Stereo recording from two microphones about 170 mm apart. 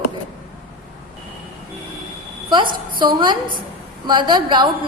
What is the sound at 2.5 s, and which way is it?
A woman's voice, 30° right (ahead or behind).